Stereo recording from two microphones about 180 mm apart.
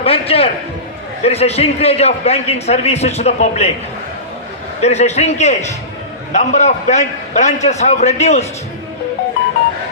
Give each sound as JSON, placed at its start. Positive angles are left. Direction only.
{"t": 0.0, "sound": "a man's voice", "side_deg": 35}
{"t": 4.8, "sound": "a man's voice", "side_deg": 40}